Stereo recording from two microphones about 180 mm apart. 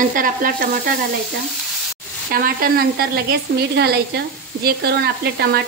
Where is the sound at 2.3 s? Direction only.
55° right (ahead or behind).